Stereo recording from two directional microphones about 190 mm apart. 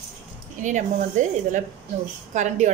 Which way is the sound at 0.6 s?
40° right (ahead or behind).